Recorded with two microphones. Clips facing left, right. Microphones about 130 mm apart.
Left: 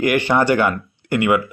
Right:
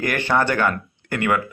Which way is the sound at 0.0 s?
15° left (ahead or behind).